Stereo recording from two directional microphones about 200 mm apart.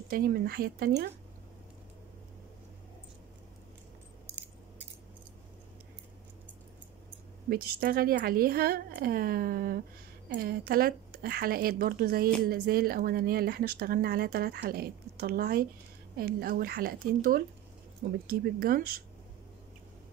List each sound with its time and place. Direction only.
0.1 s speech: 50° right (ahead or behind)
7.4 s speech: 50° right (ahead or behind)